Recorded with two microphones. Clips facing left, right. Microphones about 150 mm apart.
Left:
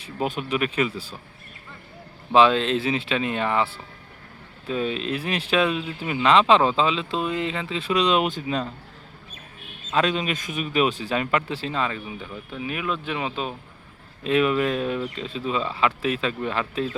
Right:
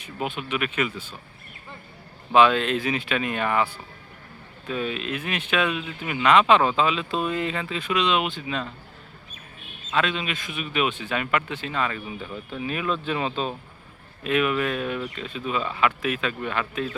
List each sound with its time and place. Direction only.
0.0 s speech: 35° left (ahead or behind)
2.3 s speech: 30° left (ahead or behind)
9.9 s speech: 40° left (ahead or behind)
12.0 s speech: 10° left (ahead or behind)
14.3 s speech: 30° left (ahead or behind)